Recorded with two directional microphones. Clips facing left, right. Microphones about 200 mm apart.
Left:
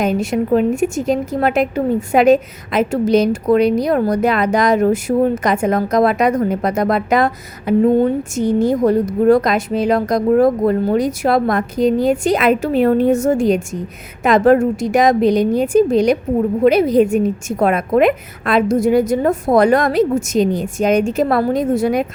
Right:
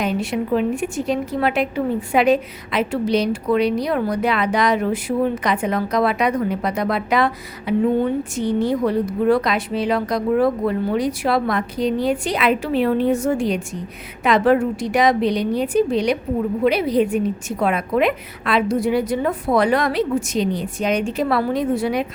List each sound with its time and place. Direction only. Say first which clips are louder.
0.0 s a woman's voice: left 5 dB; 45° left (ahead or behind)